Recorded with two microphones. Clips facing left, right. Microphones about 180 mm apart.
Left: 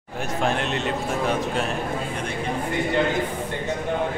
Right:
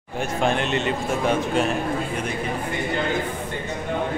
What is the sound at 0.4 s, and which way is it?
A man's voice, centre (ahead or behind).